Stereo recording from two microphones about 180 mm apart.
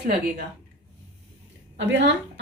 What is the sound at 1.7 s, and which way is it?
Speech, 80° right.